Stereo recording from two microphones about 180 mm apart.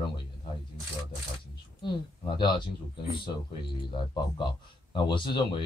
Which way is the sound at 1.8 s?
25° left (ahead or behind).